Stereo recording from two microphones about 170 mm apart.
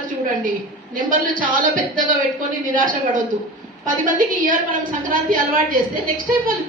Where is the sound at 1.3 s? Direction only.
55° right (ahead or behind).